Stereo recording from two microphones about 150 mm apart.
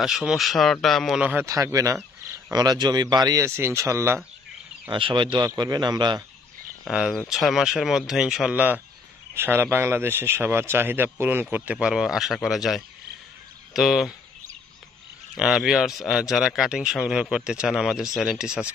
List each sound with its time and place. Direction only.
0.0 s speech: 5° right (ahead or behind)
1.4 s speech: 20° right (ahead or behind)
4.8 s speech: 35° right (ahead or behind)
6.8 s speech: 5° right (ahead or behind)
15.3 s speech: 5° right (ahead or behind)